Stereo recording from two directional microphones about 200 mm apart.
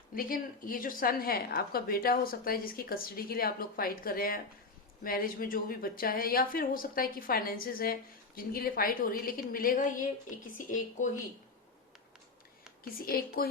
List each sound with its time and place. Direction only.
0.1 s a woman's voice: 45° left (ahead or behind)
12.8 s a woman's voice: 45° left (ahead or behind)